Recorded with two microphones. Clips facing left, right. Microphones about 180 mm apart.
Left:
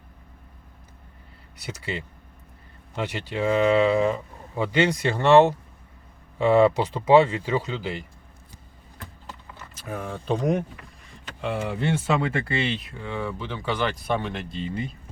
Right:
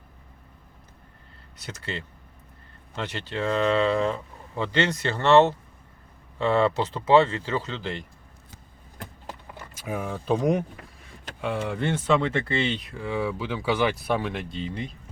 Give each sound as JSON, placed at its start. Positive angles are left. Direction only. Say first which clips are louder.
{"t": 1.5, "sound": "speech", "louder": "left 3 dB", "side_deg": 10}
{"t": 9.7, "sound": "speech", "louder": "right 2 dB", "side_deg": -10}